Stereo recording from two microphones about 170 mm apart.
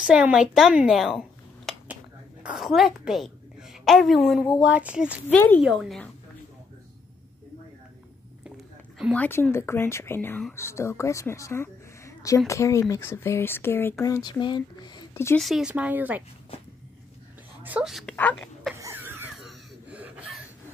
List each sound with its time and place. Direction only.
0.0 s a woman's voice: 5° right (ahead or behind)
1.7 s a sound: centre (ahead or behind)
2.4 s a woman's voice: centre (ahead or behind)
5.3 s speech: 10° left (ahead or behind)
5.6 s a woman's voice: 5° right (ahead or behind)
8.5 s a sound: 5° right (ahead or behind)
9.1 s a woman's voice: 10° left (ahead or behind)
15.3 s a woman's voice: centre (ahead or behind)
17.6 s a woman's voice: 5° right (ahead or behind)
18.4 s a sound: 5° left (ahead or behind)
18.8 s cough: 15° right (ahead or behind)
19.4 s a sound: 10° right (ahead or behind)